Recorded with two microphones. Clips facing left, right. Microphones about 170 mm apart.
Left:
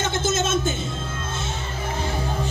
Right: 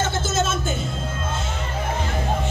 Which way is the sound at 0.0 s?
20° left (ahead or behind).